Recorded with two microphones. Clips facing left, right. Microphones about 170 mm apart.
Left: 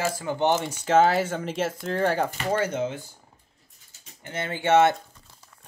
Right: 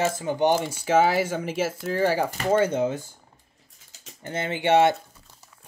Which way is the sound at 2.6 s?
35° right (ahead or behind).